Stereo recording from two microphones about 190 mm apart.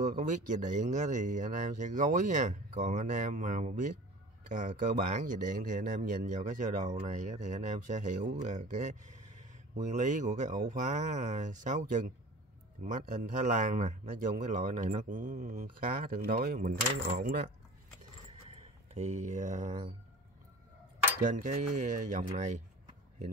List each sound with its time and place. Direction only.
0.2 s speech: 40° right (ahead or behind)
5.1 s a man's voice: 45° right (ahead or behind)
18.5 s a sound: 35° right (ahead or behind)
21.2 s speech: 40° right (ahead or behind)